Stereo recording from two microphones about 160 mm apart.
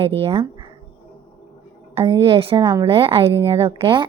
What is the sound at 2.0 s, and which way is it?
Speech, 30° right (ahead or behind).